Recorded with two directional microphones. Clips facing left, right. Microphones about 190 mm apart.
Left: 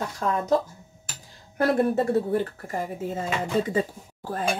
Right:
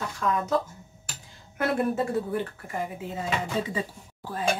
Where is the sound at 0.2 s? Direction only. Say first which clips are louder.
Even; 45° left (ahead or behind).